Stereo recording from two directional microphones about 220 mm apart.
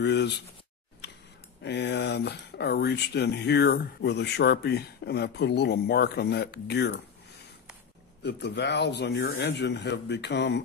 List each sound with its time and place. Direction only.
0.0 s speech: 50° left (ahead or behind)
1.6 s speech: 50° left (ahead or behind)
8.2 s speech: 50° left (ahead or behind)